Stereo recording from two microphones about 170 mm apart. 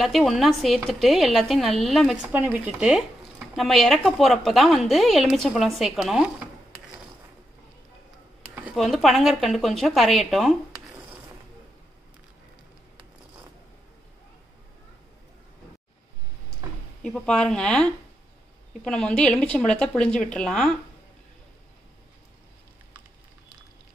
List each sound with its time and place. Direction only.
0.0 s a woman's voice: centre (ahead or behind)
2.2 s a woman's voice: 10° right (ahead or behind)
8.7 s a woman's voice: centre (ahead or behind)
17.0 s a woman's voice: 5° left (ahead or behind)